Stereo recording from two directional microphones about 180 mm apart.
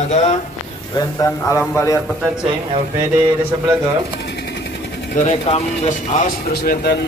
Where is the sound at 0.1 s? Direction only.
40° left (ahead or behind).